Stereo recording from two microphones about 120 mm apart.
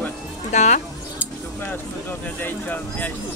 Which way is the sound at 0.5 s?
75° left (ahead or behind).